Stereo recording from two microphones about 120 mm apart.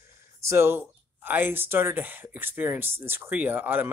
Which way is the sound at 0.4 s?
20° right (ahead or behind).